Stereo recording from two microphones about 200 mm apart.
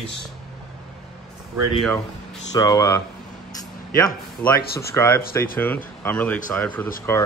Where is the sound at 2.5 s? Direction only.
20° left (ahead or behind).